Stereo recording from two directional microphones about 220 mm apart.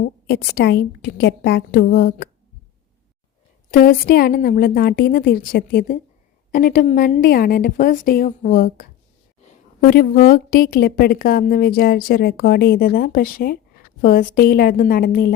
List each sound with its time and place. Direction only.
0.3 s a woman's voice: 45° left (ahead or behind)
3.7 s a woman's voice: 40° left (ahead or behind)